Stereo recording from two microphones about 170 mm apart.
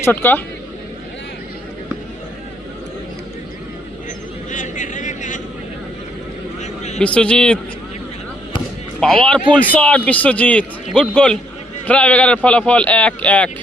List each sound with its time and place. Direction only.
0.0 s a man's voice: 10° left (ahead or behind)
4.5 s a sound: 50° left (ahead or behind)
6.6 s vehicle: 40° left (ahead or behind)
7.0 s a man's voice: 5° left (ahead or behind)
9.0 s a man's voice: 5° left (ahead or behind)